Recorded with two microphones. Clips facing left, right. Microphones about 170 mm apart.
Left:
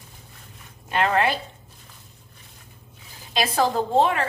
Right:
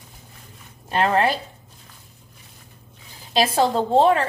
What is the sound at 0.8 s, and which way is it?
Speech, 35° right (ahead or behind).